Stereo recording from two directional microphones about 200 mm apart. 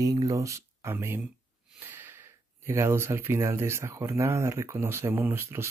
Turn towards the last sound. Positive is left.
turn(degrees=-10)  # may be behind; listen again after turning